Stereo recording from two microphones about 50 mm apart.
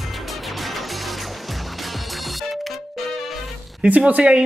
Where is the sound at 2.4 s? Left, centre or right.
Centre.